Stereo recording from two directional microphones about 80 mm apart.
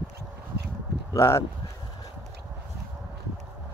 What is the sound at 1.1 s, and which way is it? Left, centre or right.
Speech, left.